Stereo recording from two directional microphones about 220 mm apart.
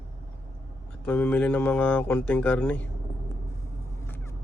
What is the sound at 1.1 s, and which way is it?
A man's voice, 5° left (ahead or behind).